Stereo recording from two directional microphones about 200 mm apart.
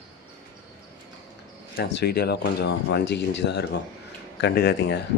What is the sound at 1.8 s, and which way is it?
Speech, 55° left (ahead or behind).